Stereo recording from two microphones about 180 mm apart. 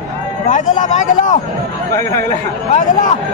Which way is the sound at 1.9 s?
15° left (ahead or behind).